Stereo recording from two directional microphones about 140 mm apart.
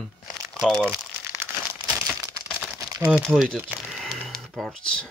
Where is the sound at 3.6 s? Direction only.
10° right (ahead or behind).